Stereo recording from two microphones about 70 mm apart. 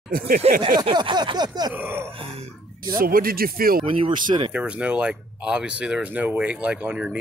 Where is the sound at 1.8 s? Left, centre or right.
Right.